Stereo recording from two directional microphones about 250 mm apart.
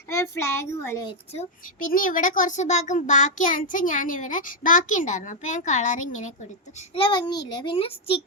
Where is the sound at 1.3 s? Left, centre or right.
Left.